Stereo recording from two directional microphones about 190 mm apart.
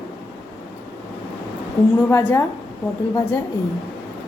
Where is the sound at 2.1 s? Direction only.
15° left (ahead or behind).